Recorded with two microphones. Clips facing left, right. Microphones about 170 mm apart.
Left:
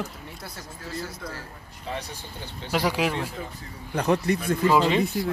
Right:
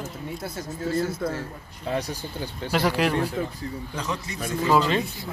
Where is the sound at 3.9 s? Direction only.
60° left (ahead or behind).